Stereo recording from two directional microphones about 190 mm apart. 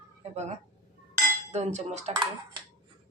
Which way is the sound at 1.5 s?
35° right (ahead or behind).